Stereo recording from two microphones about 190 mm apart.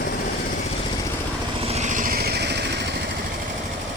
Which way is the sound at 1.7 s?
40° right (ahead or behind).